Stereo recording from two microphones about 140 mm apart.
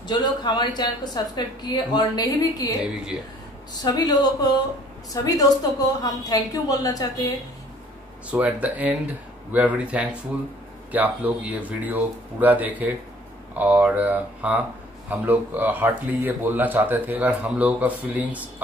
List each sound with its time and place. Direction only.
0.1 s a woman's voice: 30° left (ahead or behind)
3.8 s a woman's voice: 25° left (ahead or behind)
8.3 s speech: 10° right (ahead or behind)